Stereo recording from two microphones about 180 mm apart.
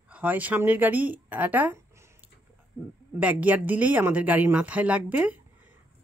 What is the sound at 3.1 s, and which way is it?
Speech, 10° right (ahead or behind).